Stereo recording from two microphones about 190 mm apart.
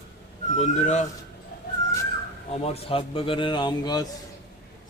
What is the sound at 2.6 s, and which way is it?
Speech, 30° left (ahead or behind).